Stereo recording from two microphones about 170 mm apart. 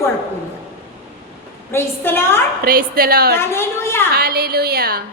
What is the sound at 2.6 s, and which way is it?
Speech, 60° right (ahead or behind).